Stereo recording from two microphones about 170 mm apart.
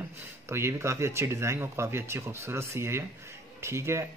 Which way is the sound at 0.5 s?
15° right (ahead or behind).